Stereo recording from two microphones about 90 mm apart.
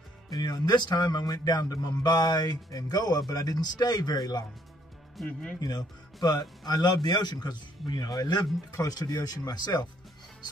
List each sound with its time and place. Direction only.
0.3 s speech: 50° left (ahead or behind)
5.1 s speech: 10° left (ahead or behind)
5.6 s speech: 50° left (ahead or behind)